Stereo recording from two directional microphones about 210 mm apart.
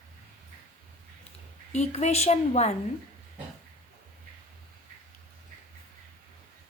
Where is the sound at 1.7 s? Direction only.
35° left (ahead or behind).